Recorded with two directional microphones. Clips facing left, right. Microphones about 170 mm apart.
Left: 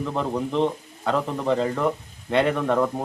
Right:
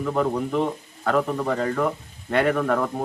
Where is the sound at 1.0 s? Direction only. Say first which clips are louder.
Right 1 dB; 20° left (ahead or behind).